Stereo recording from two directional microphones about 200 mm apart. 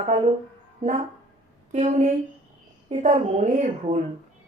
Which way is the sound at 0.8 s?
35° right (ahead or behind).